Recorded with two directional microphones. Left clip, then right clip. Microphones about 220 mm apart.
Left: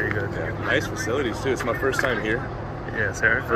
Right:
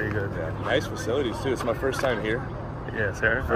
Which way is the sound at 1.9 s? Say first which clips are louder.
Left 3 dB; 30° right (ahead or behind).